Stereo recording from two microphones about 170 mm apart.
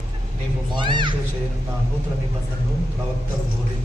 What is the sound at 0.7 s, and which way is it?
Speech, 25° right (ahead or behind).